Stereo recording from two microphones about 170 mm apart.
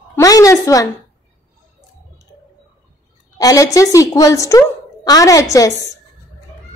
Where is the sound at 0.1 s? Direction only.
20° left (ahead or behind).